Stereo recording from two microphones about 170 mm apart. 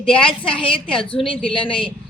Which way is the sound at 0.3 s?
30° left (ahead or behind).